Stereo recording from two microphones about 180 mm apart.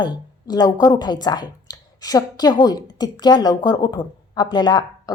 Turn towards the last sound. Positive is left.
turn(degrees=25)  # may be behind; listen again after turning